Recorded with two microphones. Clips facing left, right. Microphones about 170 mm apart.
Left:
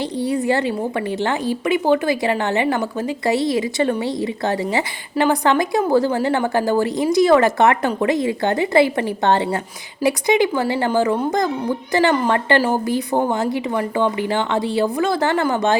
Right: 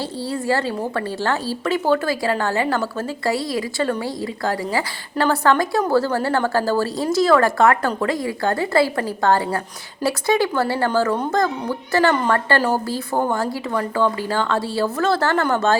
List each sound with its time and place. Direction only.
0.2 s a woman's voice: 20° left (ahead or behind)